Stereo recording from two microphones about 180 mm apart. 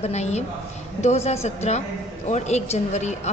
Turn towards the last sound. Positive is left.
turn(degrees=40)  # may be behind; listen again after turning